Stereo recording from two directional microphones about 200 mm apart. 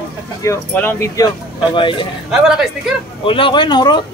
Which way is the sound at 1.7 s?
25° left (ahead or behind).